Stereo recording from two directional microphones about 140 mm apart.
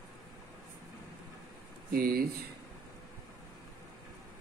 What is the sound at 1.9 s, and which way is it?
Speech, 90° right.